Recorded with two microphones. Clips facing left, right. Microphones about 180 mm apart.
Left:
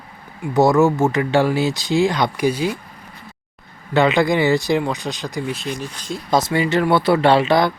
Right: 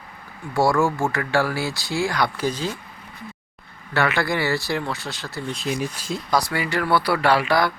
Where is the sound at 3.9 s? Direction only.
20° left (ahead or behind).